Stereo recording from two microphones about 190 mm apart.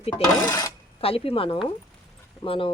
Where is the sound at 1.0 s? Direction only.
30° left (ahead or behind).